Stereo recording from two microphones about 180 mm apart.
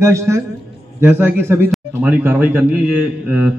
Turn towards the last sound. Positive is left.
turn(degrees=-10)  # may be behind; listen again after turning